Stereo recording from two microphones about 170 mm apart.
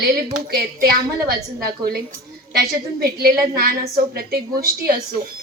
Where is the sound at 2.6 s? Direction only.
65° right (ahead or behind).